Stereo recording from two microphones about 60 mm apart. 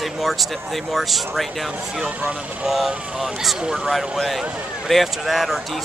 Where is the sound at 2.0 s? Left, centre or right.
Centre.